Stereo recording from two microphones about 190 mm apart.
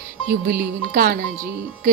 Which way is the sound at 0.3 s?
55° right (ahead or behind).